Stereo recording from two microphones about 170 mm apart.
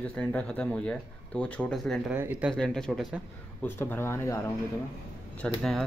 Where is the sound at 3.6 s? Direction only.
10° left (ahead or behind).